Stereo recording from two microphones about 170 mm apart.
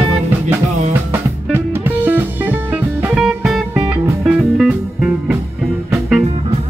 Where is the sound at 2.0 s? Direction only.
10° right (ahead or behind).